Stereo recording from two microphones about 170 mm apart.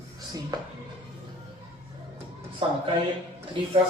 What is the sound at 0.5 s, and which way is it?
Speech, 25° right (ahead or behind).